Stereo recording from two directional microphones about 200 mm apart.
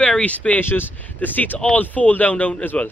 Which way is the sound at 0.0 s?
5° left (ahead or behind).